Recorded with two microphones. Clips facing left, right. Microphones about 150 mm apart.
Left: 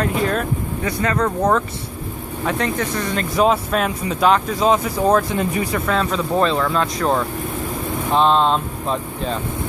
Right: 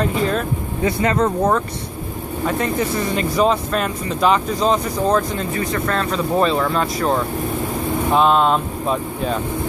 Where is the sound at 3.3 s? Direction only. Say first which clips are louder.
Left 2 dB; 5° left (ahead or behind).